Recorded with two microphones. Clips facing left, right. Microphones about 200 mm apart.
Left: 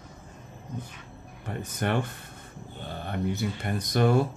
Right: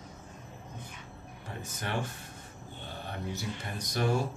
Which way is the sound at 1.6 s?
60° left (ahead or behind).